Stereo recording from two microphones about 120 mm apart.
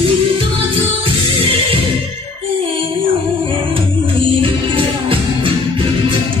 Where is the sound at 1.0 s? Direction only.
50° right (ahead or behind).